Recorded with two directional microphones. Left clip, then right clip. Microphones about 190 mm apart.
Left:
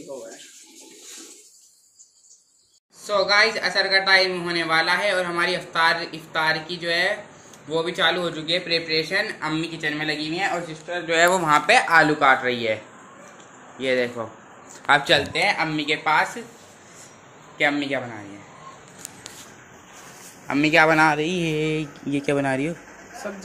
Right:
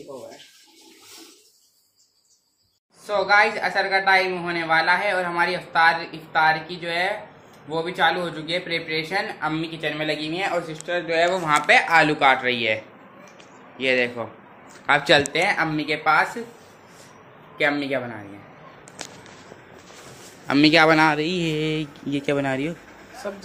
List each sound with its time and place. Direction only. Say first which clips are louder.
3.1 s a woman's voice: even; centre (ahead or behind)
10.7 s speech: right 3 dB; 30° right (ahead or behind)
11.1 s speech: left 3 dB; 30° left (ahead or behind); by 15.0 s 10° left (ahead or behind)
15.3 s speech: even; 35° right (ahead or behind)
16.0 s a man's voice: right 2 dB; 10° right (ahead or behind)
17.6 s a man's voice: even; 10° right (ahead or behind)
20.4 s a man's voice: right 1 dB; 20° right (ahead or behind)
21.0 s a woman's voice: even; 5° right (ahead or behind)
23.2 s speech: right 2 dB; 35° left (ahead or behind)